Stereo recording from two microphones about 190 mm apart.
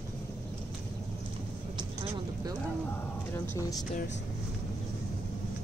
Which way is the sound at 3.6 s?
20° left (ahead or behind).